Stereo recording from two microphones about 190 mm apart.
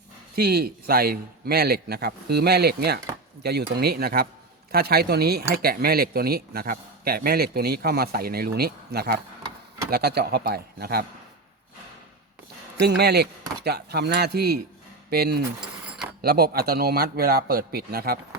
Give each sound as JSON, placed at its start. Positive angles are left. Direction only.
{"t": 0.3, "sound": "a man's voice", "side_deg": -55}
{"t": 12.8, "sound": "a man's voice", "side_deg": -55}